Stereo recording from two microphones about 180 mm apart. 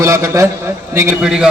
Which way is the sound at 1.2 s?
Centre (ahead or behind).